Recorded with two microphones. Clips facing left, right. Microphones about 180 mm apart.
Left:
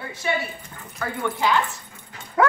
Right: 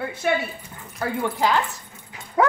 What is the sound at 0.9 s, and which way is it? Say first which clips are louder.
Speech: right 2 dB; 35° right (ahead or behind).